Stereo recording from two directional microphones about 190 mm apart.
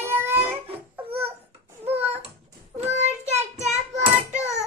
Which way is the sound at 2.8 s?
35° right (ahead or behind).